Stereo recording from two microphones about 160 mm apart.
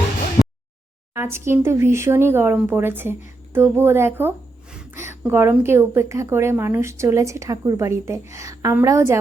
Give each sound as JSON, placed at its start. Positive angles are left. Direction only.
{"t": 1.1, "sound": "a woman's voice", "side_deg": -15}